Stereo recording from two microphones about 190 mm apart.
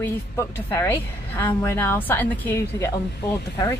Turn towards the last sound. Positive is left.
turn(degrees=15)  # may be behind; listen again after turning